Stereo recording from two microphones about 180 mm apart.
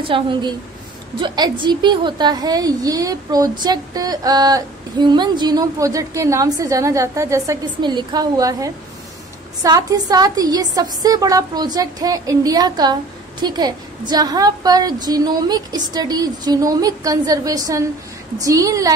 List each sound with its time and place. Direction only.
0.0 s a woman's voice: 30° right (ahead or behind)